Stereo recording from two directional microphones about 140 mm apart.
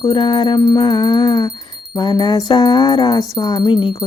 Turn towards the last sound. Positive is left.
turn(degrees=35)  # may be behind; listen again after turning